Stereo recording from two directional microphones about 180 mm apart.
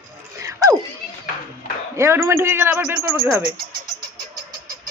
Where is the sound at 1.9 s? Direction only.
15° right (ahead or behind).